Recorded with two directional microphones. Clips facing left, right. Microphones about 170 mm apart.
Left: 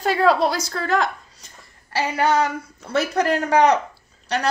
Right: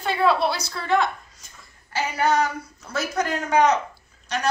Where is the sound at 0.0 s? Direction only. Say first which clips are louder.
Left 3 dB; 40° left (ahead or behind).